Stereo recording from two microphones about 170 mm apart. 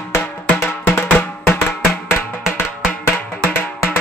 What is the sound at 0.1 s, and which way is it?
Music, 15° left (ahead or behind).